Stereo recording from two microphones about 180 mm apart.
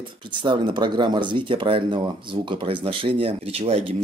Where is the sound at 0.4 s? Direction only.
25° right (ahead or behind).